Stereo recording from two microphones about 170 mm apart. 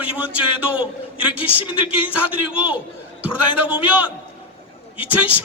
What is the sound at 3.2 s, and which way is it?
Speech, 30° left (ahead or behind).